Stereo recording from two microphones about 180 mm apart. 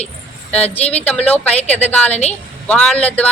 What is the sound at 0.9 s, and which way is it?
Speech, 5° left (ahead or behind).